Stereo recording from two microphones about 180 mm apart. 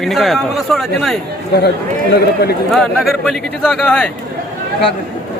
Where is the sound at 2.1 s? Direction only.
60° left (ahead or behind).